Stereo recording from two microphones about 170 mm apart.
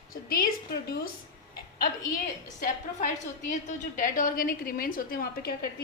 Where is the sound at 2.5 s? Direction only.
50° left (ahead or behind).